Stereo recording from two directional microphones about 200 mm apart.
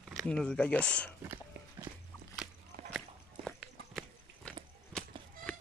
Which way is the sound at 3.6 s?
Centre (ahead or behind).